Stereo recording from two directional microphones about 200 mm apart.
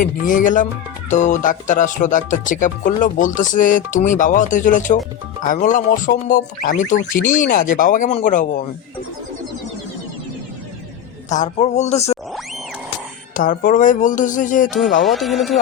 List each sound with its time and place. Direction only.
0.0 s speech: 40° left (ahead or behind)
11.3 s speech: 35° left (ahead or behind)
13.3 s speech: 40° left (ahead or behind)
15.0 s speech: centre (ahead or behind)